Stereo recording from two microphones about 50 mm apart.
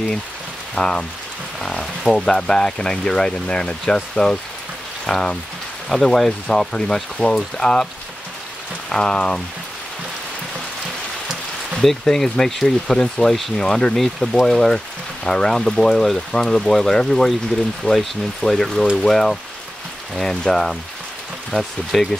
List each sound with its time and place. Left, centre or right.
0.7 s speech: centre
12.0 s speech: centre